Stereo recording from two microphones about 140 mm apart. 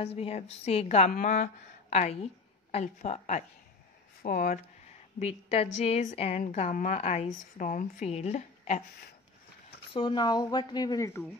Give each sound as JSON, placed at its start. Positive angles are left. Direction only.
{"t": 0.0, "sound": "a woman's voice", "side_deg": 45}
{"t": 1.1, "sound": "a woman's voice", "side_deg": 65}
{"t": 4.2, "sound": "speech", "side_deg": 75}
{"t": 5.2, "sound": "a woman's voice", "side_deg": 50}
{"t": 7.0, "sound": "a woman's voice", "side_deg": 45}
{"t": 7.5, "sound": "a woman's voice", "side_deg": 70}
{"t": 9.9, "sound": "speech", "side_deg": 30}